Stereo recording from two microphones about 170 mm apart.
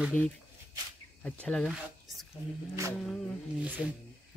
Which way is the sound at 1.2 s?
5° left (ahead or behind).